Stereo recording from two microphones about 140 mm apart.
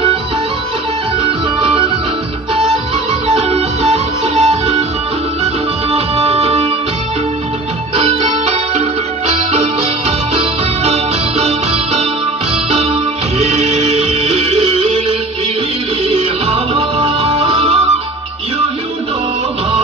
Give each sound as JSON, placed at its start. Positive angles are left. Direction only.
{"t": 1.2, "sound": "music", "side_deg": -40}
{"t": 3.3, "sound": "music", "side_deg": -45}
{"t": 7.9, "sound": "music", "side_deg": -45}
{"t": 13.4, "sound": "music", "side_deg": -50}